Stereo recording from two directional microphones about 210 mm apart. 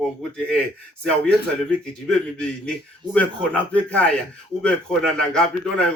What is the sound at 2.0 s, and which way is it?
A man's voice, 5° left (ahead or behind).